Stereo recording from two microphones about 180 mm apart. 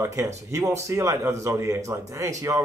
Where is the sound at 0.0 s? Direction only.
15° right (ahead or behind).